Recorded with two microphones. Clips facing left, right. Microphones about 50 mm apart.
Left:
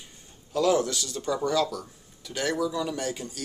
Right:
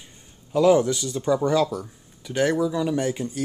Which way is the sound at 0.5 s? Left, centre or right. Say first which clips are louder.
Right 6 dB; centre.